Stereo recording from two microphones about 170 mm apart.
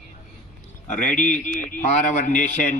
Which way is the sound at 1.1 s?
50° left (ahead or behind).